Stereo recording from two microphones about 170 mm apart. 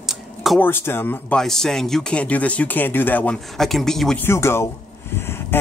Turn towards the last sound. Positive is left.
turn(degrees=15)  # may be behind; listen again after turning